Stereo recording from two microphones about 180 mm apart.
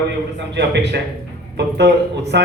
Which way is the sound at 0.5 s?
70° right (ahead or behind).